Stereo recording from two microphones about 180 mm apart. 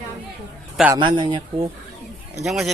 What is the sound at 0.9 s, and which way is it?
Speech, 25° right (ahead or behind).